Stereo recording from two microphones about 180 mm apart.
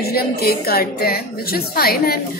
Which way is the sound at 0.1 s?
60° left (ahead or behind).